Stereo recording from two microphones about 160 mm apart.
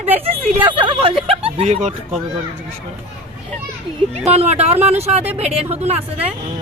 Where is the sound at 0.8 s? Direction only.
35° right (ahead or behind).